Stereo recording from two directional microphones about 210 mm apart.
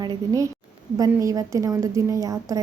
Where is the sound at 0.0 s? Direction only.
15° right (ahead or behind).